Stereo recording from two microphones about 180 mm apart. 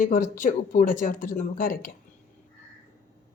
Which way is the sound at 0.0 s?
45° left (ahead or behind).